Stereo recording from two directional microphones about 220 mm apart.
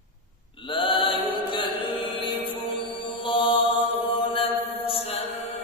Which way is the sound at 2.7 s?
20° left (ahead or behind).